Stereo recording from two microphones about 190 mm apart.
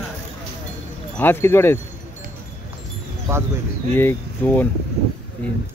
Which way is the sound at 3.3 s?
15° right (ahead or behind).